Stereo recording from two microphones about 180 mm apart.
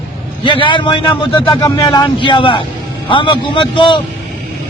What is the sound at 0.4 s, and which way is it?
A man's voice, 30° left (ahead or behind).